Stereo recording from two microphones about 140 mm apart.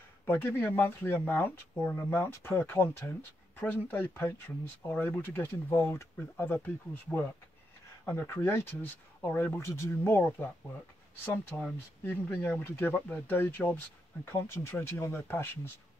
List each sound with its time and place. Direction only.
0.3 s speech: 15° left (ahead or behind)
12.0 s speech: 15° left (ahead or behind)